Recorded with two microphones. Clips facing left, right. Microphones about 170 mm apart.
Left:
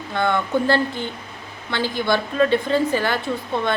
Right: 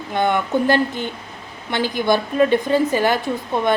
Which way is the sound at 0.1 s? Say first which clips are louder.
Right 2 dB; 15° right (ahead or behind).